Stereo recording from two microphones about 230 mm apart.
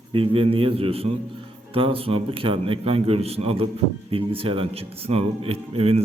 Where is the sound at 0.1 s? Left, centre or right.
Right.